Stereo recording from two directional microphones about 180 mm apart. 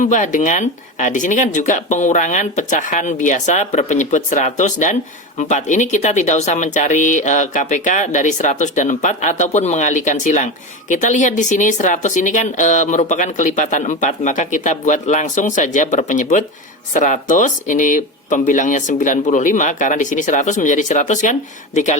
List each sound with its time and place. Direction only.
0.0 s speech: 45° left (ahead or behind)